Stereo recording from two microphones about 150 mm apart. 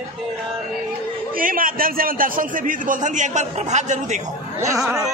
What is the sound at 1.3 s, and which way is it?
A man's voice, 70° right (ahead or behind).